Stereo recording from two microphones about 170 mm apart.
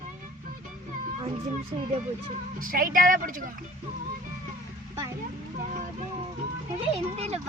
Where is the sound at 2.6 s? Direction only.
55° right (ahead or behind).